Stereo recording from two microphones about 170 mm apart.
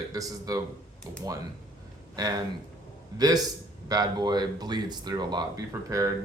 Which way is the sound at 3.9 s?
25° right (ahead or behind).